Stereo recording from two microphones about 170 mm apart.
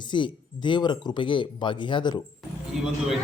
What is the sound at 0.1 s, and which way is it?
Speech, 25° left (ahead or behind).